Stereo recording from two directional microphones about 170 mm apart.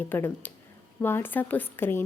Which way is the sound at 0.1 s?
10° left (ahead or behind).